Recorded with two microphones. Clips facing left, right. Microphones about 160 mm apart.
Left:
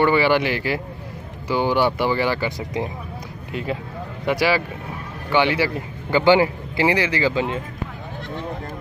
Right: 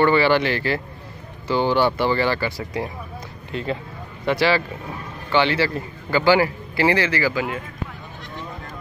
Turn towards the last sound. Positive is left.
turn(degrees=25)  # may be behind; listen again after turning